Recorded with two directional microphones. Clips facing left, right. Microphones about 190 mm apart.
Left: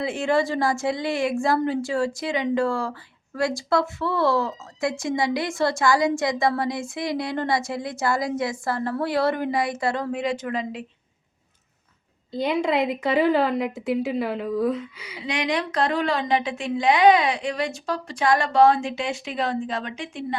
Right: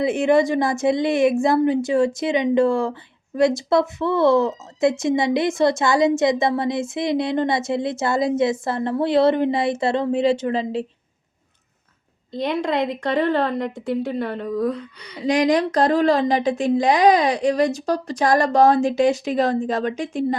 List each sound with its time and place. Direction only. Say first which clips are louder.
0.0 s a woman's voice: right 6 dB; 20° right (ahead or behind)
12.3 s a woman's voice: even; centre (ahead or behind)
15.2 s speech: right 8 dB; 40° right (ahead or behind)